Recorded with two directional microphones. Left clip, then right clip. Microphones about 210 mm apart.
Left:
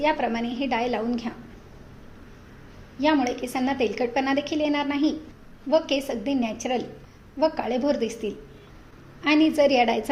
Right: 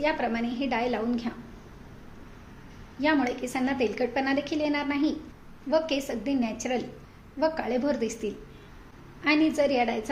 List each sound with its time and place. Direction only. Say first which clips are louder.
0.0 s a woman's voice: left 3 dB; 10° left (ahead or behind)
3.0 s a woman's voice: left 3 dB; 10° left (ahead or behind)